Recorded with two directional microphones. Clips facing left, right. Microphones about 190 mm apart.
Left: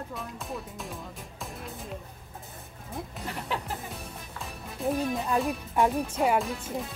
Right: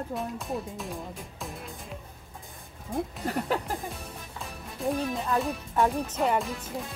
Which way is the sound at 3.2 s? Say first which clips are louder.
Right 5 dB; 45° right (ahead or behind).